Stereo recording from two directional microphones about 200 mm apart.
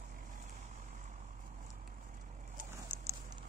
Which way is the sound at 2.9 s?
10° right (ahead or behind).